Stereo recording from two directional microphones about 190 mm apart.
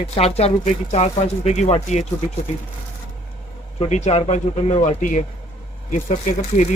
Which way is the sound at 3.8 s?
35° left (ahead or behind).